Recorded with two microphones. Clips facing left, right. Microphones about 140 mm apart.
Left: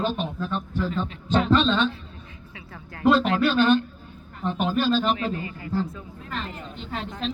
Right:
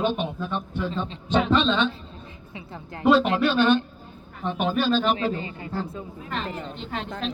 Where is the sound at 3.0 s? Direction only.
Centre (ahead or behind).